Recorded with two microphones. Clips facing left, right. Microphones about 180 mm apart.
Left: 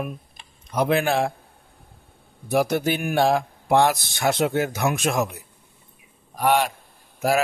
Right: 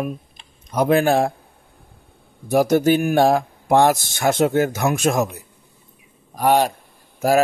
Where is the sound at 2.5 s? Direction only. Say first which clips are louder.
Right 6 dB; 40° right (ahead or behind).